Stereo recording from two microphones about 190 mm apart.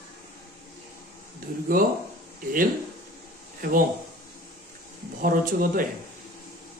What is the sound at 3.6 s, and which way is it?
Speech, 50° right (ahead or behind).